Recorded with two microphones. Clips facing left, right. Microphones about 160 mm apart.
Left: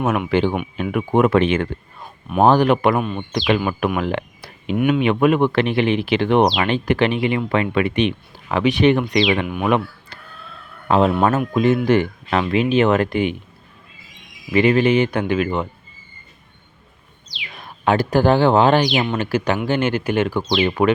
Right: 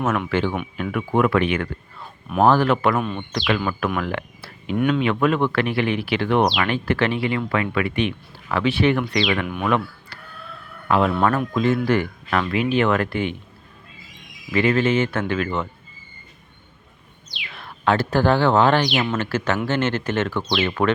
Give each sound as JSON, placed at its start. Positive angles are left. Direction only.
{"t": 0.0, "sound": "speech", "side_deg": 15}
{"t": 3.0, "sound": "speech", "side_deg": 5}
{"t": 3.3, "sound": "speech", "side_deg": 15}
{"t": 14.5, "sound": "speech", "side_deg": 20}
{"t": 17.5, "sound": "speech", "side_deg": 15}